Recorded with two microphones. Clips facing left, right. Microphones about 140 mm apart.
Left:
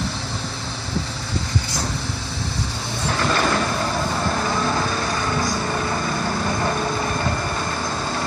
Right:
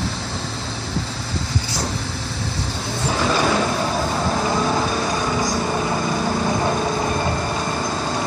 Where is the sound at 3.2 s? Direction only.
10° right (ahead or behind).